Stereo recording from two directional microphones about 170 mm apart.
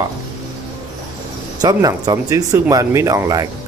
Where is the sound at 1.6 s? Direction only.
20° right (ahead or behind).